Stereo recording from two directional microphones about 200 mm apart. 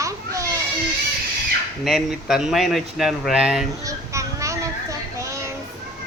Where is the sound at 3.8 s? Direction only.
15° right (ahead or behind).